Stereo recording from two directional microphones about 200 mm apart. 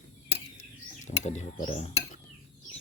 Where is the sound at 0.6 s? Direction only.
35° left (ahead or behind).